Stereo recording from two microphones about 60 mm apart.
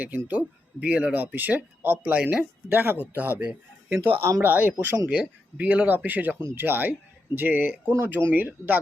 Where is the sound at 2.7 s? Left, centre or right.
Right.